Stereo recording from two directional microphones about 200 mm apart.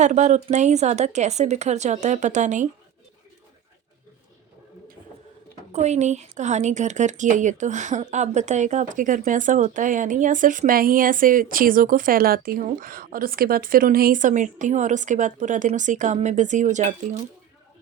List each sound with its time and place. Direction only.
0.0 s speech: 35° right (ahead or behind)
5.7 s speech: 35° right (ahead or behind)